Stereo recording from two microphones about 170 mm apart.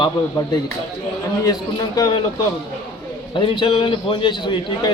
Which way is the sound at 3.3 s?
30° left (ahead or behind).